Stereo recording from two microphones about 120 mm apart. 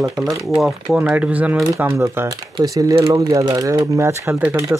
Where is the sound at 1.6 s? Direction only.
25° right (ahead or behind).